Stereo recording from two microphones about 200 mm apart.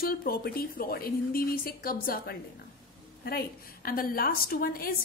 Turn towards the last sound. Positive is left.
turn(degrees=45)  # may be behind; listen again after turning